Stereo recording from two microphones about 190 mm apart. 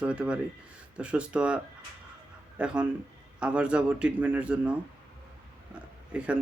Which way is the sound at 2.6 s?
5° right (ahead or behind).